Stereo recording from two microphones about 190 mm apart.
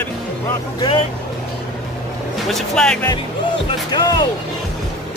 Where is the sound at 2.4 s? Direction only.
Centre (ahead or behind).